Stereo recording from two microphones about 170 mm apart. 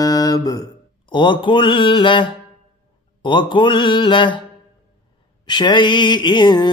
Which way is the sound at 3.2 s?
30° left (ahead or behind).